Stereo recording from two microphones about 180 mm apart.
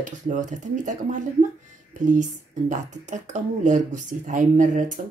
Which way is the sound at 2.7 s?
40° right (ahead or behind).